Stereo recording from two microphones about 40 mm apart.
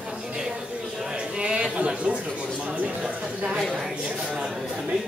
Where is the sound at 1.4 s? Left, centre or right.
Right.